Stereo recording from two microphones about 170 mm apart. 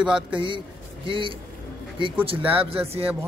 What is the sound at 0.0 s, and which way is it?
Speech, 5° right (ahead or behind).